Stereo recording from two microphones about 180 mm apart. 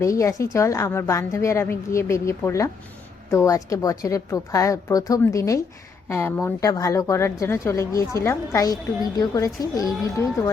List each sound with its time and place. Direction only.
0.0 s speech: 15° left (ahead or behind)